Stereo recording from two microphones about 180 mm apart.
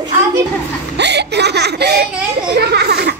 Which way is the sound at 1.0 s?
70° right (ahead or behind).